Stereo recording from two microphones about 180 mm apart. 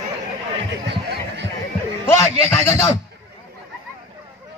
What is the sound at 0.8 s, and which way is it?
Speech, 70° right (ahead or behind).